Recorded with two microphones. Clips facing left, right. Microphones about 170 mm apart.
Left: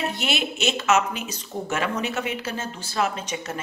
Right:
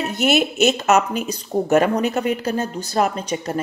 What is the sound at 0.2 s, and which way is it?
A woman's voice, 45° right (ahead or behind).